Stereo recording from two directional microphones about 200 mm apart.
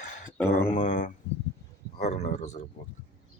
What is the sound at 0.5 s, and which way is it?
Speech, 40° left (ahead or behind).